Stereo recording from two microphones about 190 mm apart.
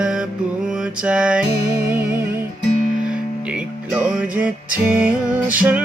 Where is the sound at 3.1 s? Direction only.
5° right (ahead or behind).